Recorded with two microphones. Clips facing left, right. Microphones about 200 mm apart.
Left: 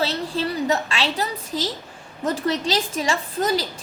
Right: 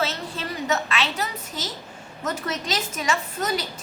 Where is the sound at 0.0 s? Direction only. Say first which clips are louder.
Left 5 dB; 35° left (ahead or behind).